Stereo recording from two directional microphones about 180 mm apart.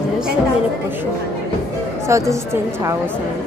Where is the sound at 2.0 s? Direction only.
15° right (ahead or behind).